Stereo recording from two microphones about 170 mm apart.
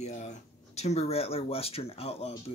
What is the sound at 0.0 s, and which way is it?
Speech, 45° left (ahead or behind).